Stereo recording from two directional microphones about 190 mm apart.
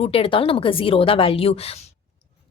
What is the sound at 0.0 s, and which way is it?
A woman's voice, 30° left (ahead or behind).